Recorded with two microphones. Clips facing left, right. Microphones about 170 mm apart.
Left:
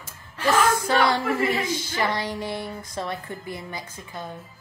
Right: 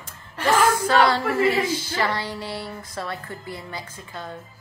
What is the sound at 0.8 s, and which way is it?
A woman's voice, 15° left (ahead or behind).